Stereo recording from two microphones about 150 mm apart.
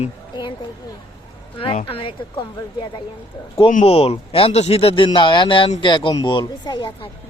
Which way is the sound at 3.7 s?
50° left (ahead or behind).